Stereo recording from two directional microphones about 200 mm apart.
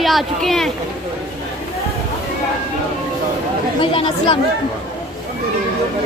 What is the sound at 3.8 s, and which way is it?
Speech, 25° left (ahead or behind).